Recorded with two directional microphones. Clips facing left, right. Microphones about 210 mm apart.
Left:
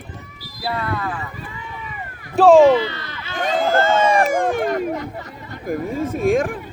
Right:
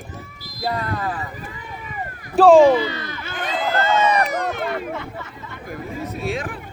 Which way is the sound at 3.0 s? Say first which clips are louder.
Right 3 dB; 50° right (ahead or behind).